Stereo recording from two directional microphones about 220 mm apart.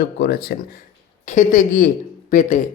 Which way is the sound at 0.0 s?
45° left (ahead or behind).